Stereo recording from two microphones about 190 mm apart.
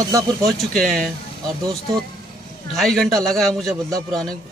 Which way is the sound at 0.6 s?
Centre (ahead or behind).